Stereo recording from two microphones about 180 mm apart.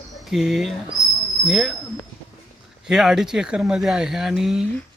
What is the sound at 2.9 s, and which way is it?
Speech, centre (ahead or behind).